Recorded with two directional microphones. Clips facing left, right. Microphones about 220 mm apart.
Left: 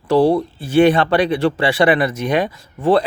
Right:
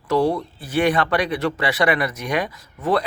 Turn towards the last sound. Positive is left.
turn(degrees=30)  # may be behind; listen again after turning